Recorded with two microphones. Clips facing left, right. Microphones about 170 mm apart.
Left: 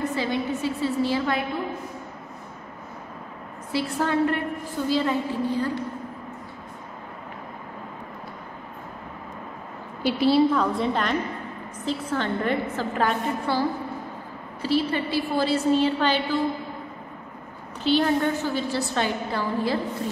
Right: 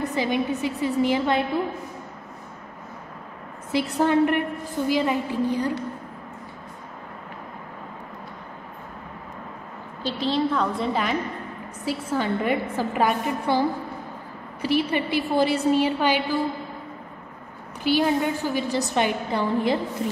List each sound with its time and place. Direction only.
0.0 s a woman's voice: 15° right (ahead or behind)
3.7 s a woman's voice: 20° right (ahead or behind)
10.0 s a woman's voice: 10° left (ahead or behind); by 13.6 s 10° right (ahead or behind)
14.6 s a woman's voice: 15° right (ahead or behind)
17.8 s a woman's voice: 10° right (ahead or behind)